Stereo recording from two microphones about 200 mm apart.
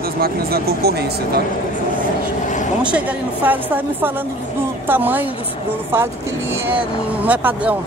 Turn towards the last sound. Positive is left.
turn(degrees=-10)  # may be behind; listen again after turning